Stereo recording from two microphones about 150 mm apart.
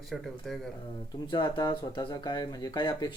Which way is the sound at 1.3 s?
30° left (ahead or behind).